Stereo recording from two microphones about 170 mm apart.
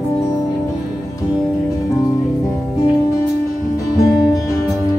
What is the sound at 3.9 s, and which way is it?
Music, 20° left (ahead or behind).